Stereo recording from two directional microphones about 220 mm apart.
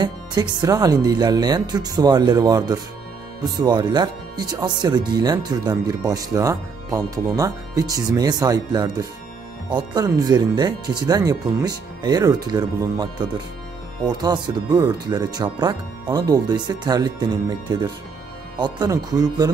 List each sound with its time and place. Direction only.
0.0 s speech: 20° right (ahead or behind)